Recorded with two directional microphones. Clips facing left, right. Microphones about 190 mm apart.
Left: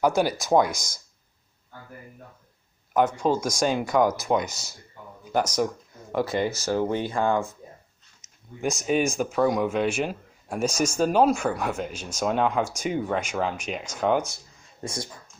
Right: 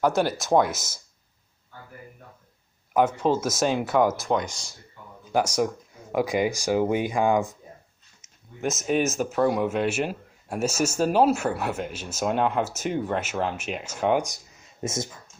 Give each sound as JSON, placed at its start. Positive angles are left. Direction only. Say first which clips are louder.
{"t": 0.0, "sound": "speech", "louder": "even", "side_deg": 0}
{"t": 2.9, "sound": "speech", "louder": "right 1 dB", "side_deg": -10}
{"t": 4.2, "sound": "speech", "louder": "left 1 dB", "side_deg": 10}
{"t": 5.3, "sound": "speech", "louder": "right 1 dB", "side_deg": -10}
{"t": 8.2, "sound": "speech", "louder": "even", "side_deg": 0}
{"t": 14.2, "sound": "a sound", "louder": "right 1 dB", "side_deg": -20}